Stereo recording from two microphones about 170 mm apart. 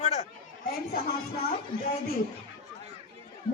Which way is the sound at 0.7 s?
65° left (ahead or behind).